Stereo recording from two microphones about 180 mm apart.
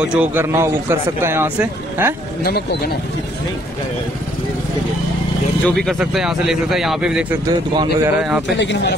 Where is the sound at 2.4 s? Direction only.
60° left (ahead or behind).